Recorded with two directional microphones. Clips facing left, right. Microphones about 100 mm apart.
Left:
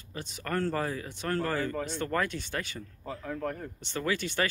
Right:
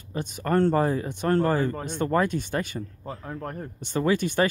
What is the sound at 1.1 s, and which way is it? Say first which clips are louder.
Speech: right 8 dB; 20° right (ahead or behind).